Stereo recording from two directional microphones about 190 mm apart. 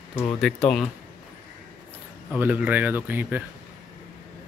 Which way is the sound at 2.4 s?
10° right (ahead or behind).